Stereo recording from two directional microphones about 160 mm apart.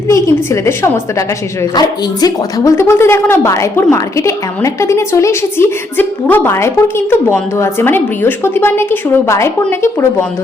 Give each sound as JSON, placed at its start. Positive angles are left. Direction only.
{"t": 0.1, "sound": "speech", "side_deg": 20}